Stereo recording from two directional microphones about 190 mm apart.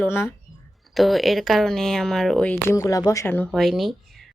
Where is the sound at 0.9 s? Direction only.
Centre (ahead or behind).